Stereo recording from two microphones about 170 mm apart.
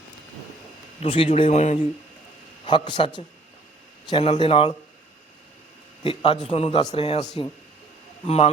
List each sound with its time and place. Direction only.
1.0 s a man's voice: 35° left (ahead or behind)
2.6 s a man's voice: 30° left (ahead or behind)
6.0 s a man's voice: 30° left (ahead or behind)